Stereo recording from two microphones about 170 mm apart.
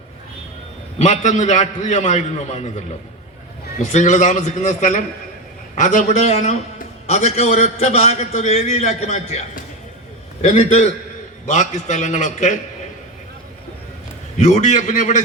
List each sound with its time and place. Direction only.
0.9 s a man's voice: 45° left (ahead or behind)
10.4 s a man's voice: 40° left (ahead or behind)
14.3 s a man's voice: 45° left (ahead or behind)